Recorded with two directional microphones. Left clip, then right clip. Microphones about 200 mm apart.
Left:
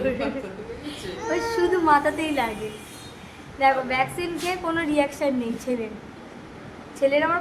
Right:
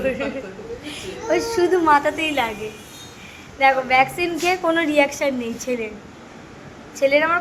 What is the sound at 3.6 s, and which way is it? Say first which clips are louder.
A woman's voice: right 5 dB; 20° right (ahead or behind).